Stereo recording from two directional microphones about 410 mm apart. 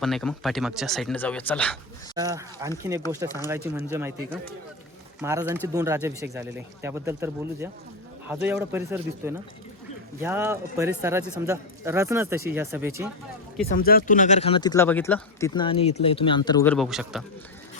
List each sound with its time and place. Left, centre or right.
0.0 s a man's voice: centre
2.1 s speech: centre
3.2 s speech: centre
3.5 s a man's voice: centre
13.7 s speech: left; by 17.2 s centre